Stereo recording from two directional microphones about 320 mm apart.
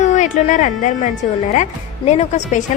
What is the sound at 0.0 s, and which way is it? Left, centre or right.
A woman's voice, left.